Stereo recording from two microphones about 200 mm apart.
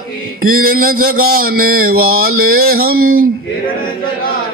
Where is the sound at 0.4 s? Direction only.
45° right (ahead or behind).